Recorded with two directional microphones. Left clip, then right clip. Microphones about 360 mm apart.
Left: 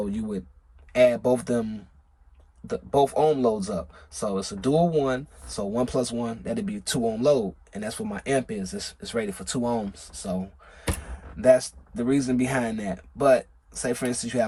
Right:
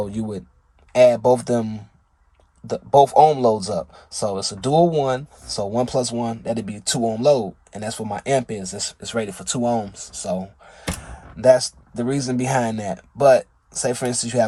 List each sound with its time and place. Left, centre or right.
0.0 s speech: centre